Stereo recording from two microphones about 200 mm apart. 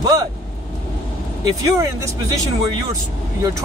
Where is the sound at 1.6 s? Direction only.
15° right (ahead or behind).